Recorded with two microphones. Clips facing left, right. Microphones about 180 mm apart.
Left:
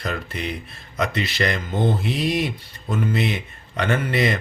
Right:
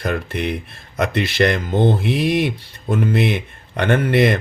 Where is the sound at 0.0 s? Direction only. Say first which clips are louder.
Right 6 dB; 60° right (ahead or behind).